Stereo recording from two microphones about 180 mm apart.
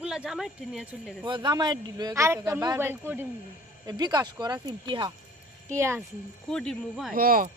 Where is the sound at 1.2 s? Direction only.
25° right (ahead or behind).